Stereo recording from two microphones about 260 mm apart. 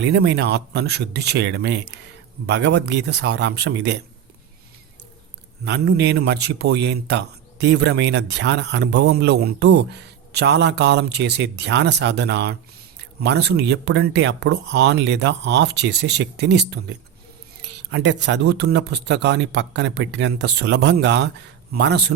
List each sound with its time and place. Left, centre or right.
0.0 s a man's voice: right
5.6 s a man's voice: right